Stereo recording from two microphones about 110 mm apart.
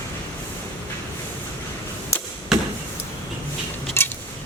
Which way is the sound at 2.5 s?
5° right (ahead or behind).